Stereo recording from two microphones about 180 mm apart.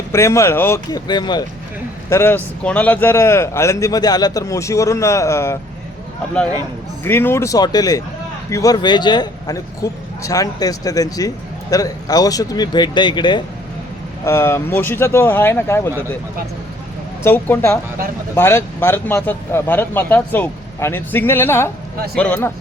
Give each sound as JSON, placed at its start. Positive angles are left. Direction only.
{"t": 0.1, "sound": "a man's voice", "side_deg": 15}
{"t": 7.0, "sound": "a man's voice", "side_deg": 10}
{"t": 14.3, "sound": "a man's voice", "side_deg": 15}
{"t": 17.2, "sound": "a man's voice", "side_deg": 15}